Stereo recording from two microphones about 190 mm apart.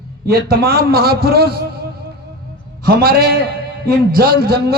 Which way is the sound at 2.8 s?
50° right (ahead or behind).